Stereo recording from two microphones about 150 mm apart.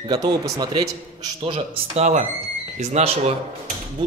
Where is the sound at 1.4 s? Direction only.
40° right (ahead or behind).